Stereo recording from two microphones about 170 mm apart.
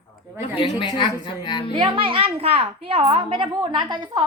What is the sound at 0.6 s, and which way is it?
Speech, 30° left (ahead or behind).